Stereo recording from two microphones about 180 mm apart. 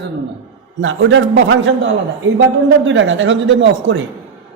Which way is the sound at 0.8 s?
90° right.